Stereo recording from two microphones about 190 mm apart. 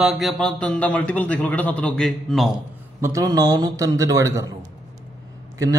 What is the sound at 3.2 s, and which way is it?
A man's voice, 20° right (ahead or behind).